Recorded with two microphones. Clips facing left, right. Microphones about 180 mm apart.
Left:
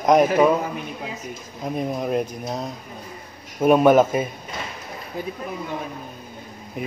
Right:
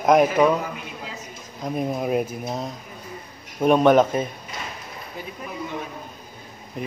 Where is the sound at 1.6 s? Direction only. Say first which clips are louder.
Even; 5° right (ahead or behind).